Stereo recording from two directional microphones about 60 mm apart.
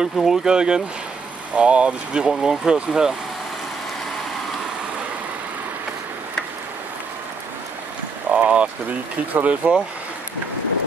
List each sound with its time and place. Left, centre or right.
0.0 s speech: centre
8.3 s a sound: centre
9.3 s speech: right